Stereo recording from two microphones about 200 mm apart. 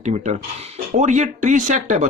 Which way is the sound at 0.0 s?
35° right (ahead or behind).